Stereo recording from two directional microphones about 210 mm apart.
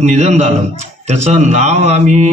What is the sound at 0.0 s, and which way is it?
A man's voice, 35° right (ahead or behind).